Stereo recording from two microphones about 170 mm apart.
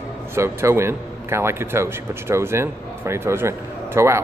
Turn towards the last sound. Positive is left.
turn(degrees=-15)  # may be behind; listen again after turning